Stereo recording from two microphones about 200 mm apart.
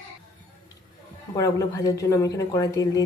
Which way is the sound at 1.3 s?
15° left (ahead or behind).